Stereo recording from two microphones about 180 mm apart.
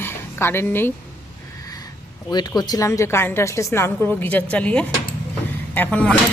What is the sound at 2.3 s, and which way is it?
A woman's voice, 25° left (ahead or behind).